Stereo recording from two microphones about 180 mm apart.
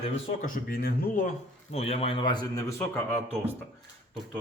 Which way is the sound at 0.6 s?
55° left (ahead or behind).